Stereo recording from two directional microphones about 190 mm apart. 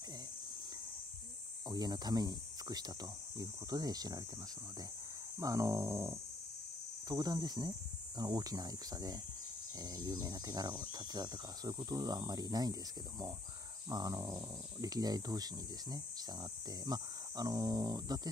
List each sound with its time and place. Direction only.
1.7 s speech: 20° right (ahead or behind)
5.4 s speech: 15° right (ahead or behind)
13.8 s speech: 20° right (ahead or behind)